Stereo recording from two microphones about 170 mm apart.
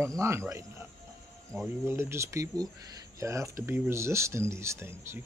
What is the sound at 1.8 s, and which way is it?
Speech, 15° right (ahead or behind).